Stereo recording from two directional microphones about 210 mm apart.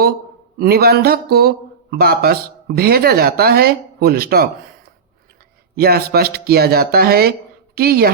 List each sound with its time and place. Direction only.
0.6 s speech: 45° right (ahead or behind)
5.7 s speech: 45° right (ahead or behind)